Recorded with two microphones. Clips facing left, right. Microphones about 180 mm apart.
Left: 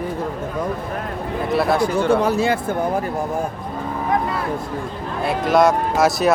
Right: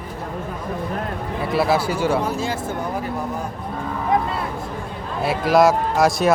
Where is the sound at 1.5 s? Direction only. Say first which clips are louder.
Left 2 dB; 5° right (ahead or behind).